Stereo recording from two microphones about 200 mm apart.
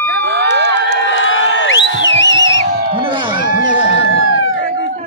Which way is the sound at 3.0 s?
25° right (ahead or behind).